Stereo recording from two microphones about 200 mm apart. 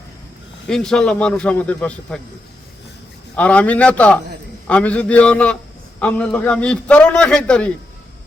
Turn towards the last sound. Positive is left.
turn(degrees=5)  # may be behind; listen again after turning